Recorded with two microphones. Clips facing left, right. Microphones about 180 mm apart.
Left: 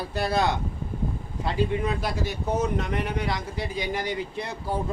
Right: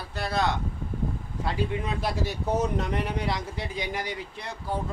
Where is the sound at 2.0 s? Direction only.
35° right (ahead or behind); by 4.2 s 15° right (ahead or behind).